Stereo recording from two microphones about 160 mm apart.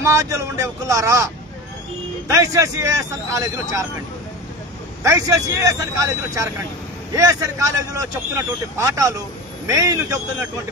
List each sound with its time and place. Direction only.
0.0 s speech: 20° right (ahead or behind)
5.0 s speech: 20° right (ahead or behind)